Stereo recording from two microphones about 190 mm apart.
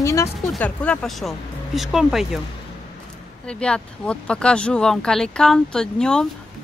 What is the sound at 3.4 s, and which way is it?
Speech, 5° left (ahead or behind).